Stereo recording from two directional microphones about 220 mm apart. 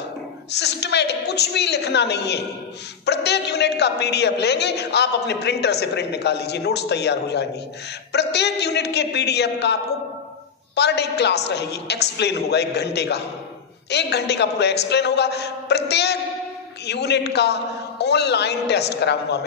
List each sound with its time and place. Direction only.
0.6 s a woman's voice: 50° left (ahead or behind)